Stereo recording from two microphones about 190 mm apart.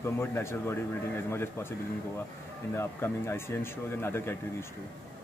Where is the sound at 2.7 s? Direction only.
15° left (ahead or behind).